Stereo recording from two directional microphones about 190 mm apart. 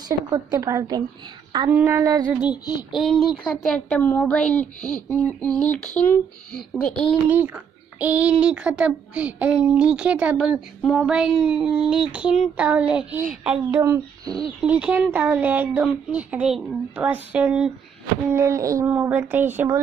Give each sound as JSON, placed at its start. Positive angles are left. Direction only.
{"t": 0.3, "sound": "speech", "side_deg": -15}
{"t": 2.9, "sound": "a child's voice", "side_deg": 0}
{"t": 7.2, "sound": "a child's voice", "side_deg": -10}
{"t": 13.7, "sound": "speech", "side_deg": -15}